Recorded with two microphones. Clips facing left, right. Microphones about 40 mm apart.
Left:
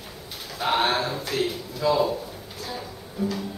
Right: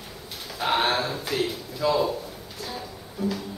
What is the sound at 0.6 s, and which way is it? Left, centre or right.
Speech, centre.